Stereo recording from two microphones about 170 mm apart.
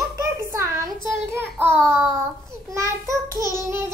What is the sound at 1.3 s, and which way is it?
Child singing, 15° right (ahead or behind).